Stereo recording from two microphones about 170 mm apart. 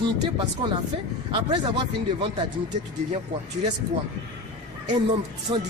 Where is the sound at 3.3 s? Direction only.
45° right (ahead or behind).